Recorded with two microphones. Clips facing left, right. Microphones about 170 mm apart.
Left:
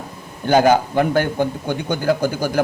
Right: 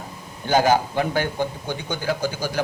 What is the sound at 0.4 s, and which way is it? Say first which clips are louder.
A man's voice: left 4 dB; 55° left (ahead or behind).